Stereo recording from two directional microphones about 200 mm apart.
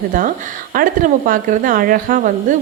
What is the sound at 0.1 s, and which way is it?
A woman's voice, 45° right (ahead or behind).